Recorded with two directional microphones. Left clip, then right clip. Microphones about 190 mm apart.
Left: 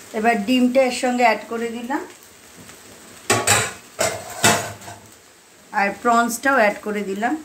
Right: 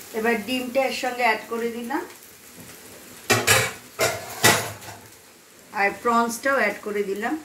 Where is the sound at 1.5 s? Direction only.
55° left (ahead or behind).